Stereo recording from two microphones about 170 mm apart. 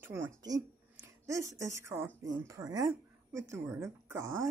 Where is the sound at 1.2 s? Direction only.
15° right (ahead or behind).